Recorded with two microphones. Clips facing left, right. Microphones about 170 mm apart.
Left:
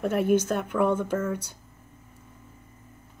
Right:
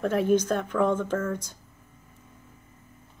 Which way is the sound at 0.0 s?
10° left (ahead or behind).